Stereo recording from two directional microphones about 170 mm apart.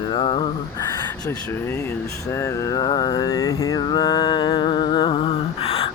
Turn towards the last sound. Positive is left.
turn(degrees=35)  # may be behind; listen again after turning